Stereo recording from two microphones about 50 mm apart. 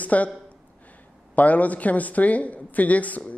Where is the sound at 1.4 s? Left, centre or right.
Left.